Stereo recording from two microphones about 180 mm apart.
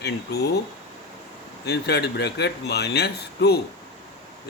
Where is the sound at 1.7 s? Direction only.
65° left (ahead or behind).